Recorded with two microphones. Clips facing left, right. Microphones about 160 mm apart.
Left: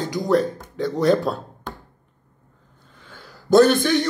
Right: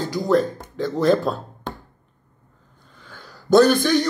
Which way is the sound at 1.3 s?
10° left (ahead or behind).